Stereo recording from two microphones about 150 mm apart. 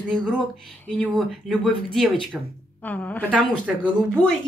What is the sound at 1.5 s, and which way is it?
Speech, centre (ahead or behind).